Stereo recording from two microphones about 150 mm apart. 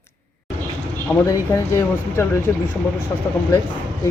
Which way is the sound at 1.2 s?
20° left (ahead or behind).